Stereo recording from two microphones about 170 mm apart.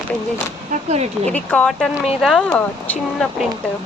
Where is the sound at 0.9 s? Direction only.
40° right (ahead or behind).